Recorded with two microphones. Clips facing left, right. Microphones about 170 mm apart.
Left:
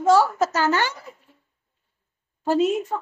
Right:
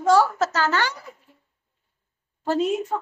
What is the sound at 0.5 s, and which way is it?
Speech, 20° left (ahead or behind).